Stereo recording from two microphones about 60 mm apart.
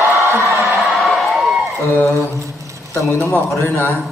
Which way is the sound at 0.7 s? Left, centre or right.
Centre.